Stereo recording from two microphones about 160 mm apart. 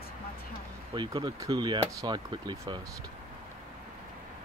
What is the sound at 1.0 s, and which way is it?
Speech, 30° right (ahead or behind).